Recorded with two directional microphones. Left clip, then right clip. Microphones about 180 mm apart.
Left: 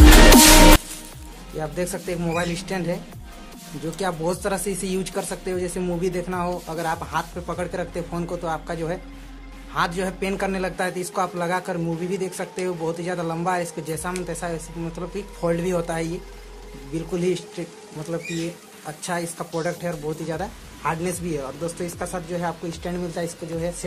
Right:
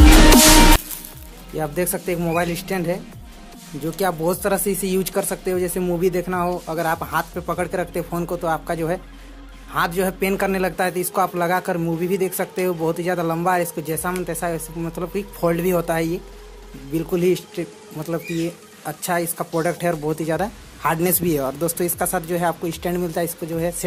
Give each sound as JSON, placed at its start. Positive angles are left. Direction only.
{"t": 1.6, "sound": "speech", "side_deg": -30}
{"t": 18.9, "sound": "speech", "side_deg": -35}